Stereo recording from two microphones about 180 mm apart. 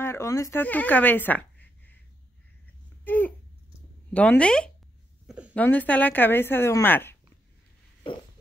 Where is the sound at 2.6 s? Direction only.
10° left (ahead or behind).